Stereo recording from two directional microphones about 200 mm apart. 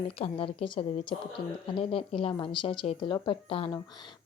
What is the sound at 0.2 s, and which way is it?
Speech, 25° left (ahead or behind).